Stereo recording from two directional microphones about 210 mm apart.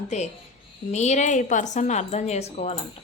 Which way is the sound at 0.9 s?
35° left (ahead or behind).